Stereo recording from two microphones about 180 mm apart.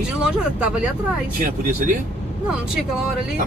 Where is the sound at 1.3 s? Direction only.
50° right (ahead or behind).